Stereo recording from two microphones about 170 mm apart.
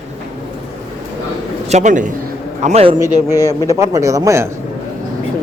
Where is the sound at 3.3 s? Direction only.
15° right (ahead or behind).